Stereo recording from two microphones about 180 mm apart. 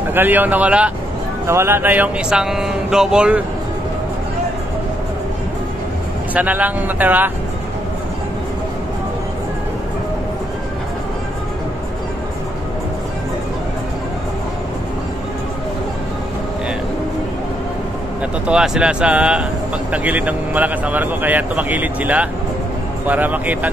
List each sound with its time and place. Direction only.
0.1 s speech: 10° right (ahead or behind)
6.3 s speech: 10° right (ahead or behind)
18.5 s speech: 5° right (ahead or behind)